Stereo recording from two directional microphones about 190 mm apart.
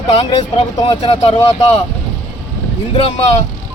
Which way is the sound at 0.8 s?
25° left (ahead or behind).